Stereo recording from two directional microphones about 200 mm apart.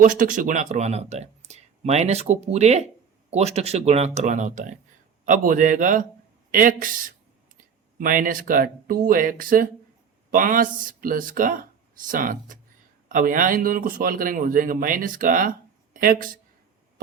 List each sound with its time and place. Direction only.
0.0 s speech: 45° right (ahead or behind)